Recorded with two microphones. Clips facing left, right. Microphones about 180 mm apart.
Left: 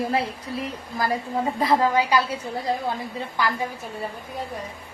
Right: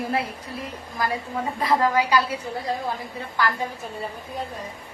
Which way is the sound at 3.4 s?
15° left (ahead or behind).